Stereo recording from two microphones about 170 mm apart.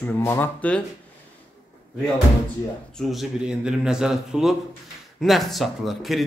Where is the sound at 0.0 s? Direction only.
10° left (ahead or behind).